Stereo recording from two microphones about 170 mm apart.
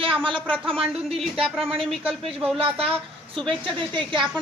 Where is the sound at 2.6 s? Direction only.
30° right (ahead or behind).